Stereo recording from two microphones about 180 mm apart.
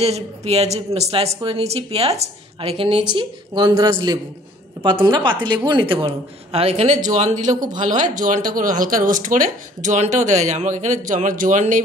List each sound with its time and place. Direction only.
0.0 s a woman's voice: 35° right (ahead or behind)
7.4 s a woman's voice: 20° right (ahead or behind)
7.9 s speech: 45° right (ahead or behind)